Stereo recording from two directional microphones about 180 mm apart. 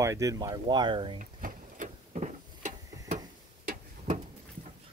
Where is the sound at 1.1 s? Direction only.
45° right (ahead or behind).